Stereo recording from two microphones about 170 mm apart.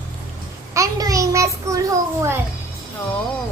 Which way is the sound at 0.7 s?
20° right (ahead or behind).